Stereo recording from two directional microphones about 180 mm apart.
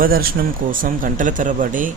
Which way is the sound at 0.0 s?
55° right (ahead or behind).